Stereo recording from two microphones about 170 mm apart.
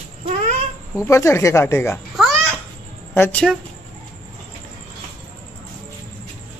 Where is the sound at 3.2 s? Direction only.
10° left (ahead or behind).